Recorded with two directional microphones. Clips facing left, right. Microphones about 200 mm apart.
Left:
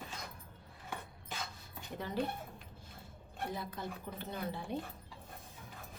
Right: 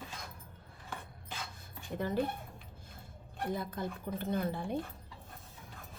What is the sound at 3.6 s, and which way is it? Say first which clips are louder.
Speech: right 4 dB; 50° right (ahead or behind).